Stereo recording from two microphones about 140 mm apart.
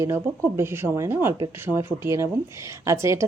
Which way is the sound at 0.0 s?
20° right (ahead or behind).